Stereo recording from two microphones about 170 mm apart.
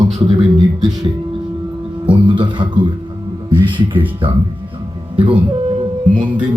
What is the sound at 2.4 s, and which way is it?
Speech, 30° right (ahead or behind).